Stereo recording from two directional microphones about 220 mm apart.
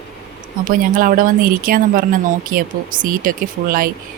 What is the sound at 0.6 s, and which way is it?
Speech, 40° right (ahead or behind).